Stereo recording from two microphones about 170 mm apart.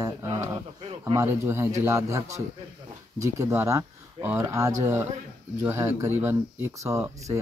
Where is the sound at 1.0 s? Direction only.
20° right (ahead or behind).